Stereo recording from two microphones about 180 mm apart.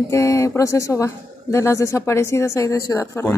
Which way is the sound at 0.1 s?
15° left (ahead or behind).